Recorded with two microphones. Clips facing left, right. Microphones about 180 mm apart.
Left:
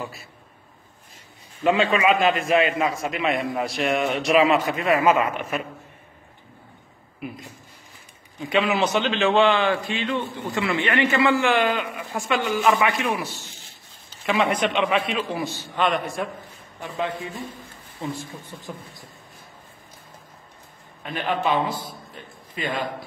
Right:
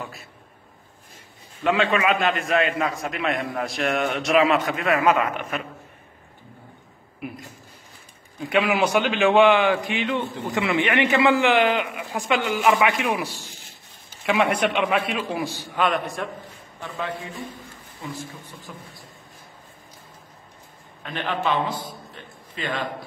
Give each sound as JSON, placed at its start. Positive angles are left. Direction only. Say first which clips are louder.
{"t": 1.6, "sound": "a man's voice", "louder": "left 1 dB", "side_deg": 0}
{"t": 8.5, "sound": "a man's voice", "louder": "right 1 dB", "side_deg": -10}
{"t": 14.3, "sound": "a man's voice", "louder": "right 1 dB", "side_deg": -10}
{"t": 16.8, "sound": "a man's voice", "louder": "left 3 dB", "side_deg": 20}
{"t": 21.0, "sound": "a man's voice", "louder": "left 2 dB", "side_deg": 10}